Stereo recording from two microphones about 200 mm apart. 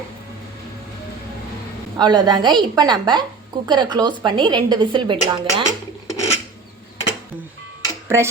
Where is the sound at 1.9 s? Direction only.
20° right (ahead or behind).